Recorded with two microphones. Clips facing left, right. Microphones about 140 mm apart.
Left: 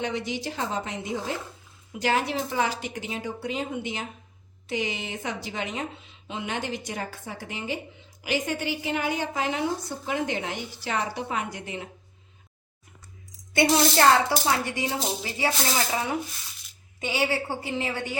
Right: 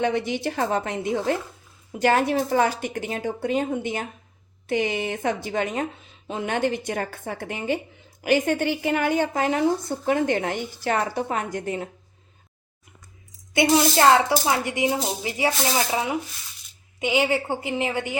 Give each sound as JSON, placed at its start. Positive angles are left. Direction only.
{"t": 0.0, "sound": "speech", "side_deg": -55}
{"t": 13.5, "sound": "speech", "side_deg": -20}
{"t": 17.0, "sound": "speech", "side_deg": -20}